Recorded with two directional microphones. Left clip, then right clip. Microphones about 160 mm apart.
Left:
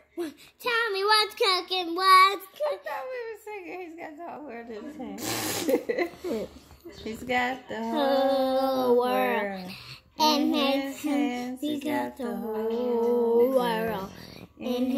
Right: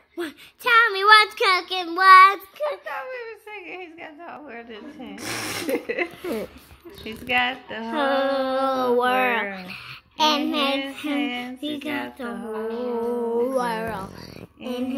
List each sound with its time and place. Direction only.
0.2 s child singing: centre (ahead or behind)
5.7 s speech: 5° left (ahead or behind)
7.1 s speech: 10° left (ahead or behind)
12.4 s child singing: 5° right (ahead or behind); by 14.0 s 10° left (ahead or behind)
14.6 s child singing: centre (ahead or behind)